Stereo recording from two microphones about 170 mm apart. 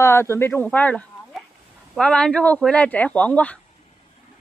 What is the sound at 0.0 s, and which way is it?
Speech, 15° left (ahead or behind).